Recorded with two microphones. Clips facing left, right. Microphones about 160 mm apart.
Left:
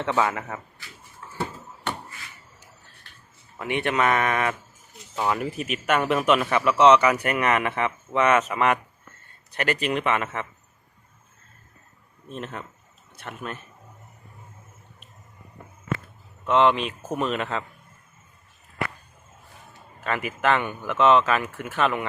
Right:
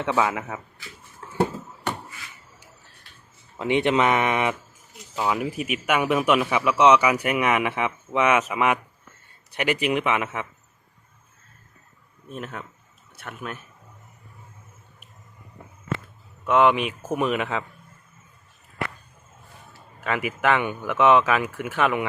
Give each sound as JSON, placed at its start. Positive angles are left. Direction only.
{"t": 0.0, "sound": "speech", "side_deg": -5}
{"t": 3.6, "sound": "speech", "side_deg": -20}
{"t": 5.1, "sound": "speech", "side_deg": -5}
{"t": 12.3, "sound": "speech", "side_deg": -5}
{"t": 16.5, "sound": "speech", "side_deg": -10}
{"t": 20.1, "sound": "speech", "side_deg": -15}